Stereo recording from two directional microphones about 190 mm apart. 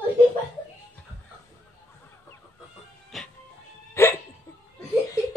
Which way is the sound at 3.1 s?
Centre (ahead or behind).